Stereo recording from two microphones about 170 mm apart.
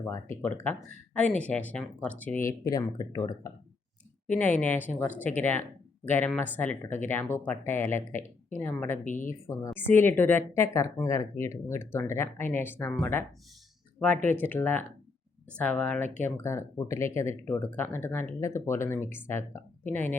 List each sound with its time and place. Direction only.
0.4 s speech: 10° left (ahead or behind)
2.5 s speech: 20° left (ahead or behind)
4.6 s speech: 10° left (ahead or behind)
9.0 s speech: 50° left (ahead or behind)
9.6 s speech: 10° left (ahead or behind)
14.3 s speech: 10° left (ahead or behind)